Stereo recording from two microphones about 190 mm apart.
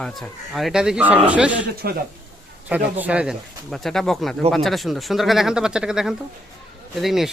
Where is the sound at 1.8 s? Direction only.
55° right (ahead or behind).